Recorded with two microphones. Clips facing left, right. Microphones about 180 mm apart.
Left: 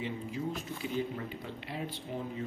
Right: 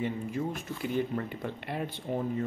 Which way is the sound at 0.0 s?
55° right (ahead or behind).